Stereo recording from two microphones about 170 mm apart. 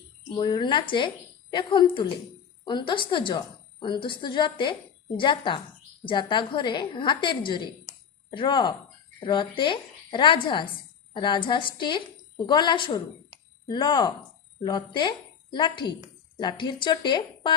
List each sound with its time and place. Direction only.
0.3 s a woman's voice: 30° left (ahead or behind)